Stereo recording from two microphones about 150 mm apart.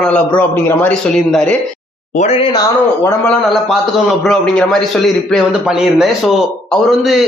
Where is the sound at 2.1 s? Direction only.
45° left (ahead or behind).